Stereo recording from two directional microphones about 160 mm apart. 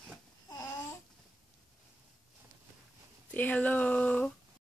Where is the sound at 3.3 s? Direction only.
10° left (ahead or behind).